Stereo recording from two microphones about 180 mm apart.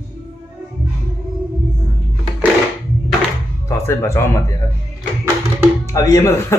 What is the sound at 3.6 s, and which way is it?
Speech, 15° left (ahead or behind).